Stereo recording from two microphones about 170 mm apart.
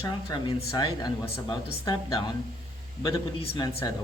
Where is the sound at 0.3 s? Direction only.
25° left (ahead or behind).